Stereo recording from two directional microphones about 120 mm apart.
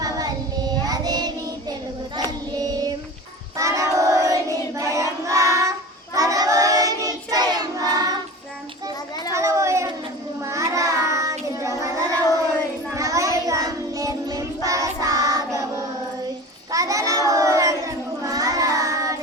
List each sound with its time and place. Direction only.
0.0 s child singing: 35° right (ahead or behind)
2.6 s child singing: 30° right (ahead or behind)
9.3 s a sound: 25° right (ahead or behind)
10.4 s child singing: 25° right (ahead or behind)
16.7 s children playing: 30° right (ahead or behind)
17.8 s child singing: 30° right (ahead or behind)